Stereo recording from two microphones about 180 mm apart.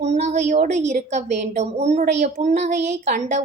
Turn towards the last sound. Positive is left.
turn(degrees=-40)  # may be behind; listen again after turning